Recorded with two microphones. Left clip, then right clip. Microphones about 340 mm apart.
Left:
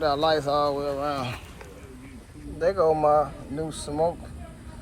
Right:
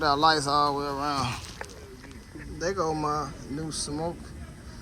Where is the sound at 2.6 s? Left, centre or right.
Centre.